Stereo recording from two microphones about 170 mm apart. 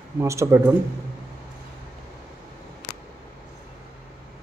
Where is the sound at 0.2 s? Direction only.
15° right (ahead or behind).